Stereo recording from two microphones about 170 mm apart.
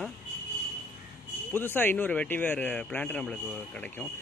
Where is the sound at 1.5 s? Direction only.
10° left (ahead or behind).